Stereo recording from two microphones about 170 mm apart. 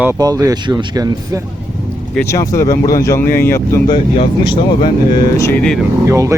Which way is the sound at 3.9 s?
30° left (ahead or behind).